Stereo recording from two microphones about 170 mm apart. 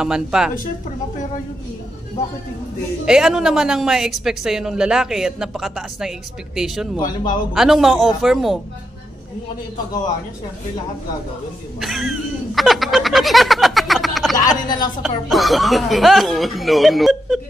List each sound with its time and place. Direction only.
0.0 s a woman's voice: 5° right (ahead or behind)
3.1 s a woman's voice: 5° right (ahead or behind)
11.8 s a sound: centre (ahead or behind)
14.5 s a woman's voice: 25° left (ahead or behind)
15.0 s a woman's voice: centre (ahead or behind)